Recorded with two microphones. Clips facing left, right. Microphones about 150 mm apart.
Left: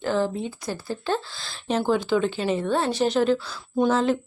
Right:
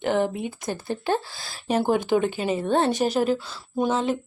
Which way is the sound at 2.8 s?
20° right (ahead or behind).